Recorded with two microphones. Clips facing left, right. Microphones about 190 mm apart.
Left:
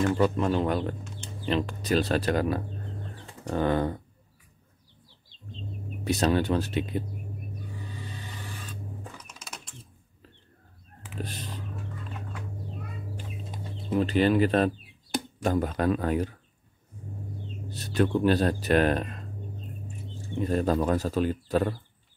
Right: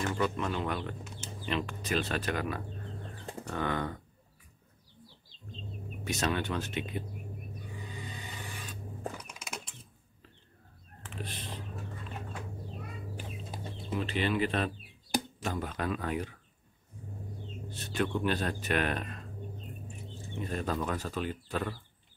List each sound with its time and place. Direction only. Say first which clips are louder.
0.1 s speech: left 8 dB; 35° left (ahead or behind)
6.0 s speech: left 8 dB; 35° left (ahead or behind)
7.9 s vehicle: left 2 dB; 15° right (ahead or behind)
11.1 s vehicle: left 5 dB; 40° left (ahead or behind)
13.9 s speech: left 8 dB; 40° left (ahead or behind)
17.6 s speech: left 7 dB; 40° left (ahead or behind)
20.4 s speech: left 9 dB; 40° left (ahead or behind)